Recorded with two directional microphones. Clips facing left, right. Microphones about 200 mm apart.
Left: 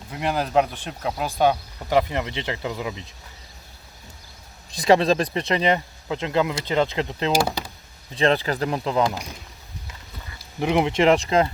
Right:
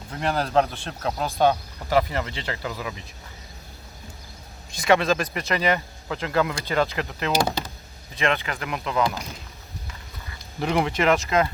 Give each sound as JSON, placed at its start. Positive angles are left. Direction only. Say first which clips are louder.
{"t": 0.1, "sound": "speech", "louder": "left 1 dB", "side_deg": 10}
{"t": 4.8, "sound": "speech", "louder": "left 3 dB", "side_deg": 30}
{"t": 7.3, "sound": "speech", "louder": "even", "side_deg": 10}
{"t": 8.1, "sound": "speech", "louder": "left 5 dB", "side_deg": 35}
{"t": 10.6, "sound": "speech", "louder": "left 3 dB", "side_deg": 15}